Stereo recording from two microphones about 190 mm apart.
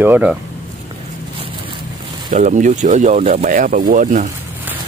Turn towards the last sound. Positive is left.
turn(degrees=-40)  # may be behind; listen again after turning